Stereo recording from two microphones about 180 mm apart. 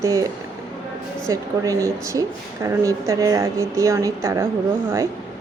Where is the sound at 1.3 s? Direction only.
15° right (ahead or behind).